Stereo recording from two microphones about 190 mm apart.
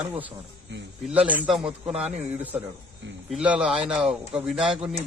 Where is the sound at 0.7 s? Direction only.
70° right (ahead or behind).